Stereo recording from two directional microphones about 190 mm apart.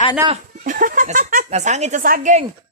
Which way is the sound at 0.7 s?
45° right (ahead or behind).